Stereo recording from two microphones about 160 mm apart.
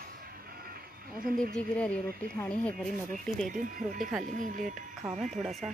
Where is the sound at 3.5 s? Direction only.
55° right (ahead or behind).